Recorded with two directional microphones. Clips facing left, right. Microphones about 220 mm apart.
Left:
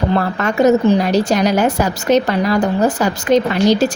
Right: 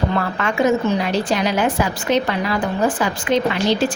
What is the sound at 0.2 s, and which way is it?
A woman's voice, 40° left (ahead or behind).